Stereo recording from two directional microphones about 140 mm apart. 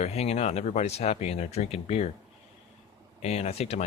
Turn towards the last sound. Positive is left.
turn(degrees=50)  # may be behind; listen again after turning